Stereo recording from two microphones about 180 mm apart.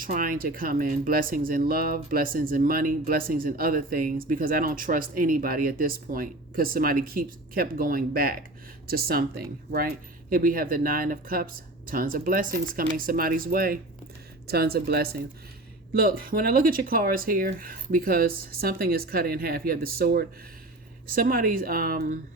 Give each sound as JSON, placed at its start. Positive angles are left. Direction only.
{"t": 0.0, "sound": "speech", "side_deg": -50}